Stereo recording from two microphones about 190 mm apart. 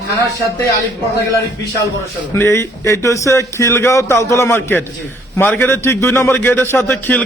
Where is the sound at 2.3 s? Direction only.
15° left (ahead or behind).